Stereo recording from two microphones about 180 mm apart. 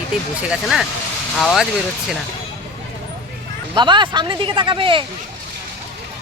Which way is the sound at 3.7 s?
25° right (ahead or behind).